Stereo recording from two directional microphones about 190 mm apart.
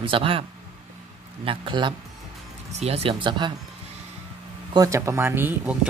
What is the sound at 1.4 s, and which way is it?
Speech, 25° right (ahead or behind).